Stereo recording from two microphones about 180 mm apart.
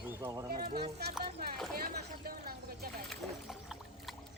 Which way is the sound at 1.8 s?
55° right (ahead or behind).